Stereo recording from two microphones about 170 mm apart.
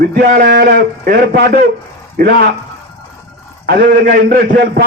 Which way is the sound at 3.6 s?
65° right (ahead or behind).